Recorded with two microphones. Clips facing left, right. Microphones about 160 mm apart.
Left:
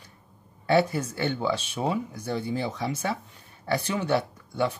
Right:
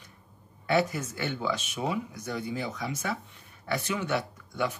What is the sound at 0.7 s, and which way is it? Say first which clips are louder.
Speech: left 4 dB; 30° left (ahead or behind).